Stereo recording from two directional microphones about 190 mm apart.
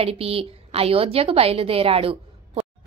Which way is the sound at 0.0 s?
30° right (ahead or behind).